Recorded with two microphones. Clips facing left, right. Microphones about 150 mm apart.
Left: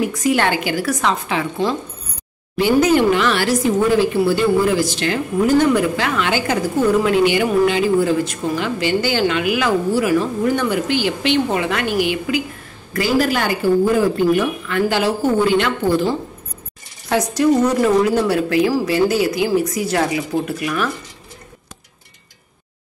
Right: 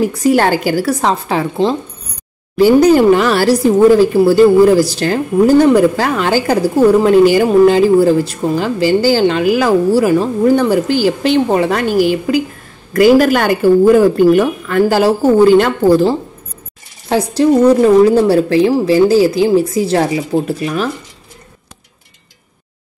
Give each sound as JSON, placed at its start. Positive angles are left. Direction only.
{"t": 0.0, "sound": "speech", "side_deg": -35}
{"t": 12.9, "sound": "a woman's voice", "side_deg": -50}